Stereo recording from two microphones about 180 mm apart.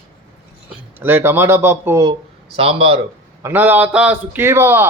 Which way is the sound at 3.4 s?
10° right (ahead or behind).